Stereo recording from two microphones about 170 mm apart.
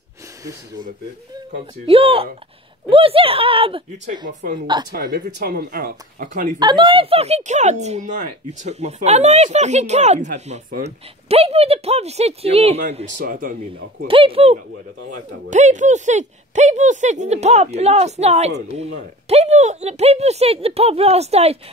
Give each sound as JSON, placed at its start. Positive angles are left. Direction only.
{"t": 1.9, "sound": "speech", "side_deg": -35}
{"t": 4.3, "sound": "speech", "side_deg": -45}
{"t": 4.9, "sound": "speech", "side_deg": -65}
{"t": 6.6, "sound": "speech", "side_deg": -25}
{"t": 12.9, "sound": "speech", "side_deg": -50}
{"t": 14.0, "sound": "speech", "side_deg": -35}
{"t": 15.0, "sound": "speech", "side_deg": -45}